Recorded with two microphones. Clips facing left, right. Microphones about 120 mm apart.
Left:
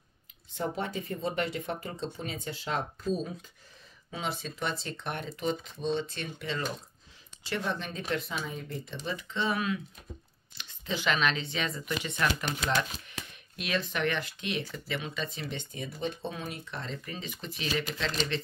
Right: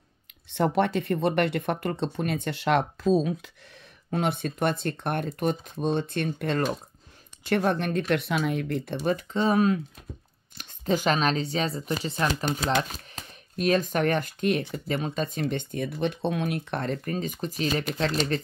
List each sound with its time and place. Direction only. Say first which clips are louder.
0.5 s speech: right 10 dB; 70° right (ahead or behind); by 3.5 s 90° right
4.1 s speech: right 9 dB; 60° right (ahead or behind); by 18.4 s 45° right (ahead or behind)